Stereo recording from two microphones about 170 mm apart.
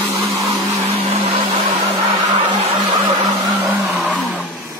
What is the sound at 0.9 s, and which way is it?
Vehicle, 35° right (ahead or behind).